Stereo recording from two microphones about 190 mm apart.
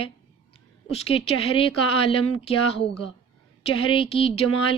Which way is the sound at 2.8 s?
70° left (ahead or behind).